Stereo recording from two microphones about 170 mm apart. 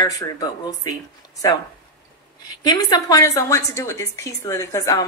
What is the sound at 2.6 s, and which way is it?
A woman's voice, 25° left (ahead or behind).